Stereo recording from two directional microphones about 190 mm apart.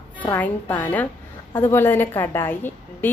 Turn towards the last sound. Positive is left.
turn(degrees=10)  # may be behind; listen again after turning